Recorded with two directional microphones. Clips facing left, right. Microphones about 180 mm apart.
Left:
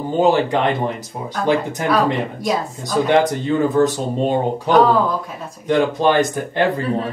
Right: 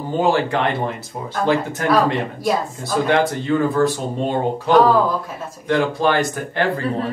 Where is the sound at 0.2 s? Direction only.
20° left (ahead or behind).